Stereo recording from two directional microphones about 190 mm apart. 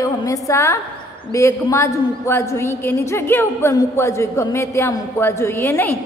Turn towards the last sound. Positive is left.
turn(degrees=10)  # may be behind; listen again after turning